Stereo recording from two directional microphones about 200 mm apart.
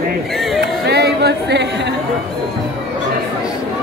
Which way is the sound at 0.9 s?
55° right (ahead or behind).